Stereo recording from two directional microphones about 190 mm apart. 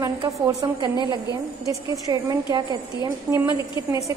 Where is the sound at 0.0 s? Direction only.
20° right (ahead or behind).